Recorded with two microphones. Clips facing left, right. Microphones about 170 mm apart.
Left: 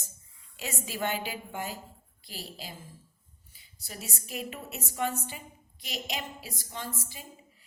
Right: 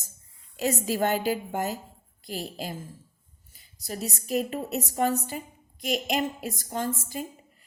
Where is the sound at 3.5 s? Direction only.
40° right (ahead or behind).